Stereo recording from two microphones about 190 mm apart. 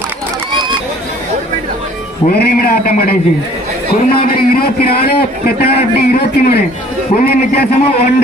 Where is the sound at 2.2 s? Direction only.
55° left (ahead or behind).